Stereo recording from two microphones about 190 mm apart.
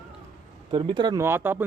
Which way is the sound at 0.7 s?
25° right (ahead or behind).